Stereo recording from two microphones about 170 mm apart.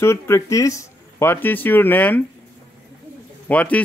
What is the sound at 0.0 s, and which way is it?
Speech, 15° left (ahead or behind).